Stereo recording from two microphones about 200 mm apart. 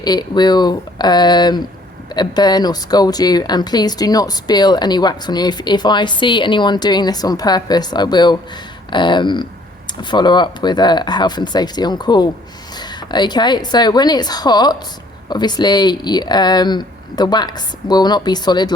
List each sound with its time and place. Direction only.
0.0 s speech: 20° left (ahead or behind)